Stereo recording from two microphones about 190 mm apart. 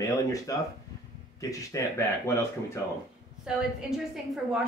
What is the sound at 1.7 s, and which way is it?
Speech, 15° left (ahead or behind).